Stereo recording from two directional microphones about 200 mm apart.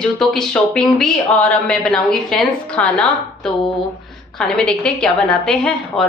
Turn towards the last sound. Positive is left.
turn(degrees=5)  # may be behind; listen again after turning